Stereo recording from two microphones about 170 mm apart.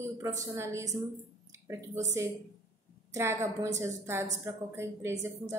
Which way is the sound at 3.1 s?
15° right (ahead or behind).